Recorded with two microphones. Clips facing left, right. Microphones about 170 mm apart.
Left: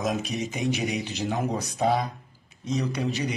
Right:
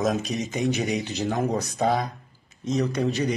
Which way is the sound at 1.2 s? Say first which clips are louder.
Right 2 dB; centre (ahead or behind).